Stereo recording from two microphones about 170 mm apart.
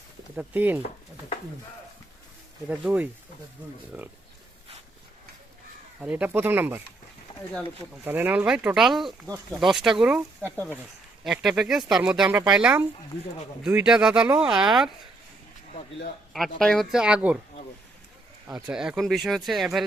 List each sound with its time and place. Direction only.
0.3 s speech: 10° right (ahead or behind)
2.6 s speech: 10° right (ahead or behind)
6.0 s speech: 10° right (ahead or behind)
8.0 s speech: 10° right (ahead or behind)
16.3 s speech: centre (ahead or behind)
18.4 s speech: 5° right (ahead or behind)